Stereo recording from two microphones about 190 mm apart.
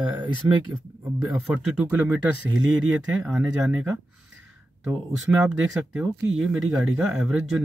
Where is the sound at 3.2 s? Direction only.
5° right (ahead or behind).